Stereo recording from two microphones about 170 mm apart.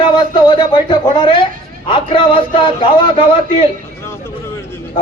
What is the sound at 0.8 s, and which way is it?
A man's voice, 25° left (ahead or behind).